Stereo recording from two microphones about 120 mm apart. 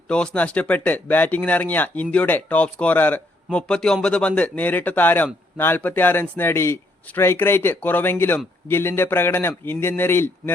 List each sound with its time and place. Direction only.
0.1 s a man's voice: 10° left (ahead or behind)